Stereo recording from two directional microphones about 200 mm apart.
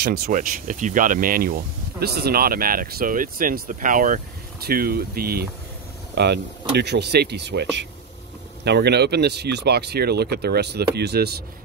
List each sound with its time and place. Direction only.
0.0 s speech: 50° right (ahead or behind)